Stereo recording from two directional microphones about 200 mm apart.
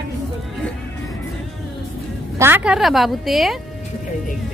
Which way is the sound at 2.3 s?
10° right (ahead or behind).